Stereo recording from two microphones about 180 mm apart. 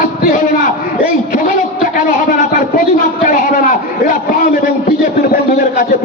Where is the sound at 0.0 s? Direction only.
50° left (ahead or behind).